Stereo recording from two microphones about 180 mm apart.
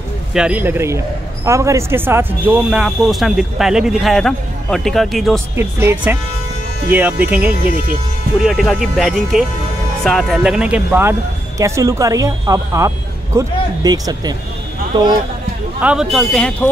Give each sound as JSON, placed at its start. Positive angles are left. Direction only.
{"t": 0.3, "sound": "speech", "side_deg": -5}
{"t": 5.6, "sound": "speech", "side_deg": -15}
{"t": 7.6, "sound": "speech", "side_deg": -50}
{"t": 8.4, "sound": "speech", "side_deg": 0}
{"t": 15.8, "sound": "speech", "side_deg": -5}